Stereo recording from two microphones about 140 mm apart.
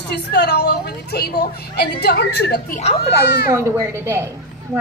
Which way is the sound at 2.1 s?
90° left.